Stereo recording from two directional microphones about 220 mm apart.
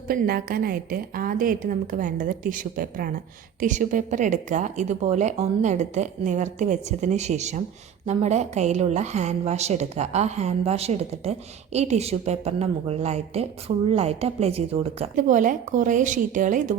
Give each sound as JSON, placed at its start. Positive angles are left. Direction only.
{"t": 0.1, "sound": "a woman's voice", "side_deg": -40}